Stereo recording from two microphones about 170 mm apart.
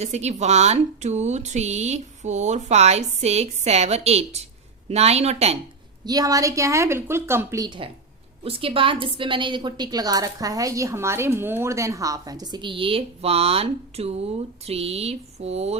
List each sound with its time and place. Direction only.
0.0 s speech: 40° right (ahead or behind)
6.1 s a woman's voice: 20° right (ahead or behind); by 15.7 s 40° right (ahead or behind)